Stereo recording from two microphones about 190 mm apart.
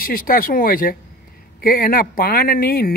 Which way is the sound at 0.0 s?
50° left (ahead or behind).